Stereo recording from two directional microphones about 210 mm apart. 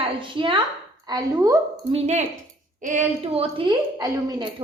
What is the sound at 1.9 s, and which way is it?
A woman's voice, 30° right (ahead or behind).